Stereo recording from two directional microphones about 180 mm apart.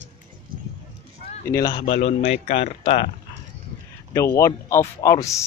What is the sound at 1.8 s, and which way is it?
Speech, 35° left (ahead or behind).